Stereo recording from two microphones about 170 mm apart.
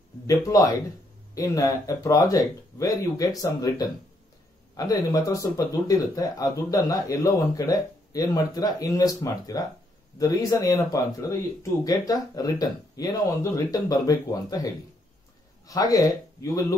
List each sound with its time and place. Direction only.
0.3 s speech: 20° left (ahead or behind)